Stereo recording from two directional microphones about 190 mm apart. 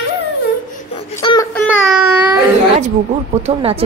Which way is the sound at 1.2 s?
20° left (ahead or behind).